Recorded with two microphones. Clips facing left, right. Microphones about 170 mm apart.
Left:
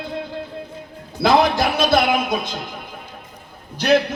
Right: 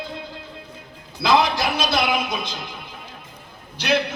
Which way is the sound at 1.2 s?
50° left (ahead or behind).